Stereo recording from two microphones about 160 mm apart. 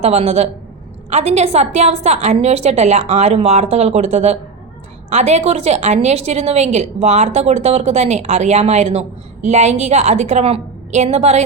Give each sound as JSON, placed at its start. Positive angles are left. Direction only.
{"t": 0.0, "sound": "a woman's voice", "side_deg": -40}